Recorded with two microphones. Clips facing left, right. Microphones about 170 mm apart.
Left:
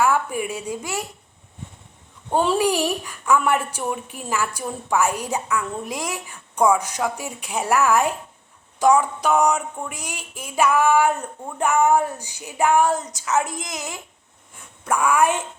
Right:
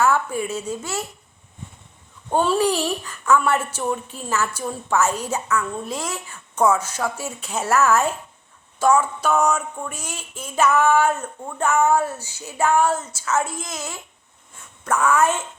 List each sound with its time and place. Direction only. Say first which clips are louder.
0.0 s a woman's voice: even; 15° left (ahead or behind)
2.3 s a woman's voice: even; 15° left (ahead or behind)